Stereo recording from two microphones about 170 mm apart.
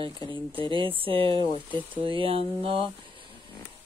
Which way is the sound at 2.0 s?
30° right (ahead or behind).